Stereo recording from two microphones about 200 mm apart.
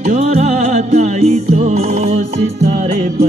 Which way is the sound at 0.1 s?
35° right (ahead or behind).